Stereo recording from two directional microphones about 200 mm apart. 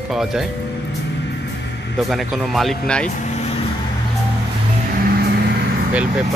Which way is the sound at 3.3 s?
30° left (ahead or behind).